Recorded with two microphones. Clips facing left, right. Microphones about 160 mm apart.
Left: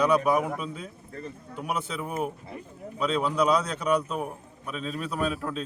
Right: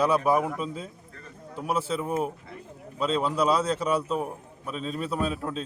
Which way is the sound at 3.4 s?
30° right (ahead or behind).